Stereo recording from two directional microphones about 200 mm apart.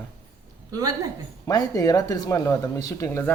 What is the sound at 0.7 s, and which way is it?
Speech, 20° right (ahead or behind).